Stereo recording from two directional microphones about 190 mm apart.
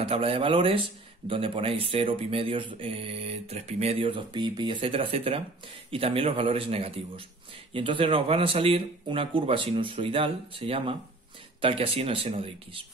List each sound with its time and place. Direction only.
0.0 s speech: 30° right (ahead or behind)